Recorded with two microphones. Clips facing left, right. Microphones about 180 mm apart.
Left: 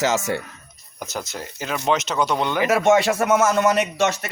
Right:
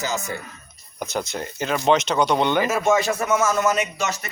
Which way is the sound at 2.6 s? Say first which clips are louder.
Left 3 dB; 75° left (ahead or behind).